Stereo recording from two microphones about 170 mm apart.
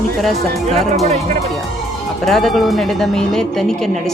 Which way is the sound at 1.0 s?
40° right (ahead or behind).